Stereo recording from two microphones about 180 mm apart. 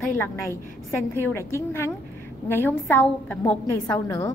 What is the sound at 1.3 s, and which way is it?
A woman's voice, 15° left (ahead or behind).